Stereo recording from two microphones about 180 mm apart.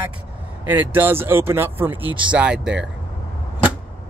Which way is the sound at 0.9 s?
10° right (ahead or behind).